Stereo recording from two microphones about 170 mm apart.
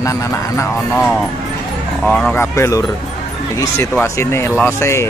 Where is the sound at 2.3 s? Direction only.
15° left (ahead or behind).